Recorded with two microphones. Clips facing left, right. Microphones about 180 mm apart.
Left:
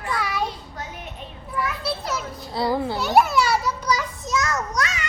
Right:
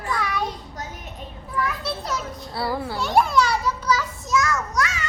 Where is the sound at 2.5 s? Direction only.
20° left (ahead or behind).